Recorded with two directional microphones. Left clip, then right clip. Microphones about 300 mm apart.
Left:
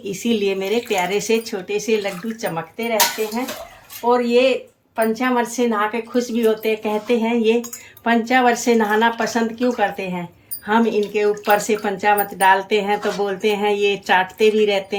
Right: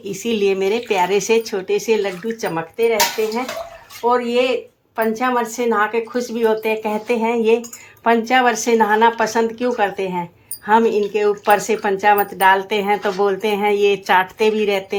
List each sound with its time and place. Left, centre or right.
0.0 s speech: centre
4.1 s speech: centre